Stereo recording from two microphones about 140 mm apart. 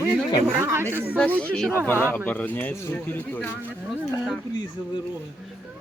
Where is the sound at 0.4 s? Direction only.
15° right (ahead or behind).